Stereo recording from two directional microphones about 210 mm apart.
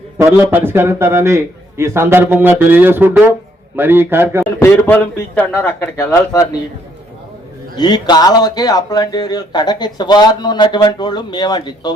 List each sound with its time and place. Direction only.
0.2 s a man's voice: 10° right (ahead or behind)
4.6 s speech: 10° left (ahead or behind)
7.8 s speech: 20° left (ahead or behind)